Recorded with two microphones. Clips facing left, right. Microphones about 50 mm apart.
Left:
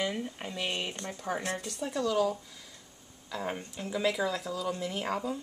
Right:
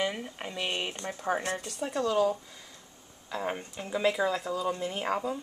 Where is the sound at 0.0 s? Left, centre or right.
Centre.